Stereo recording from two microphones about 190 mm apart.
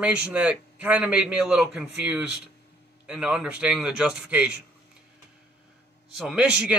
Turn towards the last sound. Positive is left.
turn(degrees=-5)  # may be behind; listen again after turning